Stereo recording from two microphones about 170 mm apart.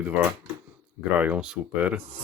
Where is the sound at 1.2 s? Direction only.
5° right (ahead or behind).